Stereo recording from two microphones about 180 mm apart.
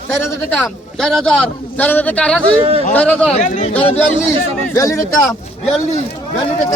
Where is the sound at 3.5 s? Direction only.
40° left (ahead or behind).